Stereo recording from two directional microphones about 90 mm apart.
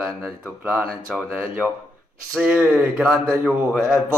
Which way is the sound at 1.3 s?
15° right (ahead or behind).